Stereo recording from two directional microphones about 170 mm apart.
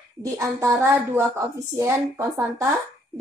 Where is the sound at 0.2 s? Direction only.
15° right (ahead or behind).